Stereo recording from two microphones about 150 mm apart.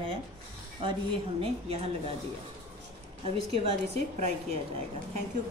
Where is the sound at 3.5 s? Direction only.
45° right (ahead or behind).